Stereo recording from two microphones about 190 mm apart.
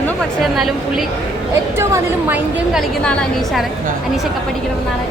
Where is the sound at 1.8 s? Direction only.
15° right (ahead or behind).